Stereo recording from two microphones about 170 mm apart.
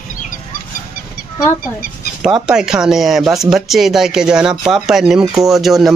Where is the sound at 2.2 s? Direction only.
5° right (ahead or behind).